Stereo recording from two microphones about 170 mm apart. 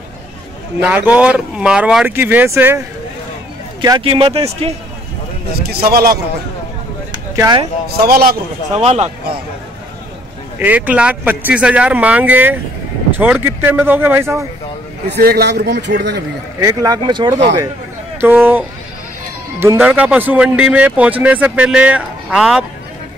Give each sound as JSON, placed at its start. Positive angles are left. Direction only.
{"t": 0.8, "sound": "speech", "side_deg": -10}
{"t": 3.8, "sound": "speech", "side_deg": -20}
{"t": 4.1, "sound": "a man's voice", "side_deg": -35}
{"t": 5.5, "sound": "a man's voice", "side_deg": -65}
{"t": 7.1, "sound": "a sound", "side_deg": -25}
{"t": 8.0, "sound": "a man's voice", "side_deg": -65}
{"t": 8.7, "sound": "a man's voice", "side_deg": -40}
{"t": 10.6, "sound": "speech", "side_deg": -10}
{"t": 15.0, "sound": "a man's voice", "side_deg": -70}
{"t": 16.6, "sound": "speech", "side_deg": -20}
{"t": 18.2, "sound": "speech", "side_deg": -10}